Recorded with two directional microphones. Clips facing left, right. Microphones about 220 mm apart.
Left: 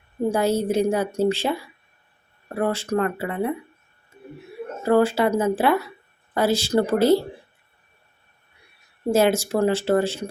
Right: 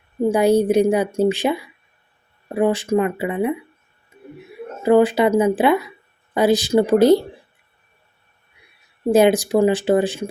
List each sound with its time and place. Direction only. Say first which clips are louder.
0.3 s a woman's voice: right 6 dB; 15° right (ahead or behind)
4.8 s a woman's voice: right 4 dB; 20° right (ahead or behind)
9.0 s a woman's voice: right 5 dB; 15° right (ahead or behind)